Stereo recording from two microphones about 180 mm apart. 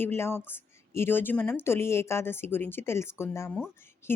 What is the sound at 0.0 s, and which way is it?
Speech, 15° left (ahead or behind).